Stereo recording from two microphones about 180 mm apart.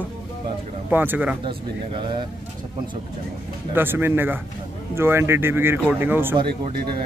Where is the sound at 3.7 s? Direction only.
10° right (ahead or behind).